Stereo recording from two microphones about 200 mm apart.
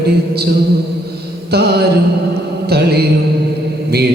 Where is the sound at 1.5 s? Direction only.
55° right (ahead or behind).